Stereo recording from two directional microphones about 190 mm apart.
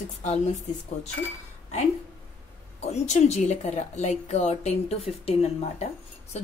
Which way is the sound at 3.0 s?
35° left (ahead or behind).